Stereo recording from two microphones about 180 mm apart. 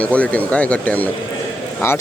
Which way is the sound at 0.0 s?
5° left (ahead or behind).